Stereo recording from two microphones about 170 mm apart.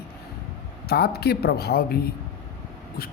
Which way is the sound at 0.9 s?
65° left (ahead or behind).